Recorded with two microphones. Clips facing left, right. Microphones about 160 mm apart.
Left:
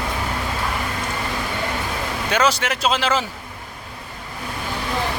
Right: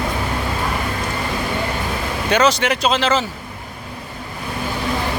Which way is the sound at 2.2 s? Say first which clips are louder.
Right 4 dB; 5° left (ahead or behind).